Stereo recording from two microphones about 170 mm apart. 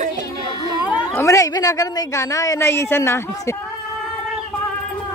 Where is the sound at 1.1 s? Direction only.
20° left (ahead or behind).